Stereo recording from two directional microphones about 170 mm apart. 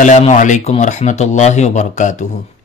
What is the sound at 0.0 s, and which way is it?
Speech, 45° left (ahead or behind).